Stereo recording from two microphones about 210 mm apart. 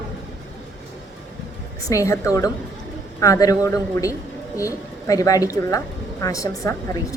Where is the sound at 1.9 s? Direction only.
15° left (ahead or behind).